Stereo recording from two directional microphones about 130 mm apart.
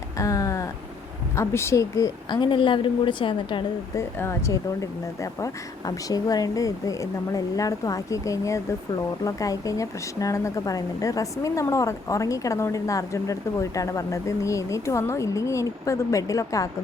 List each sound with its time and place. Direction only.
0.2 s a sound: 25° left (ahead or behind)
1.4 s speech: 20° left (ahead or behind)
2.4 s a woman's voice: 40° left (ahead or behind)
3.9 s speech: 20° left (ahead or behind)